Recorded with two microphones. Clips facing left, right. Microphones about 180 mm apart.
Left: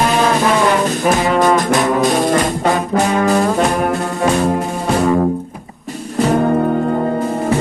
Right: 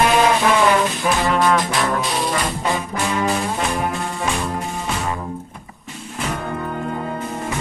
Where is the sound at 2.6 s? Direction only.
65° left (ahead or behind).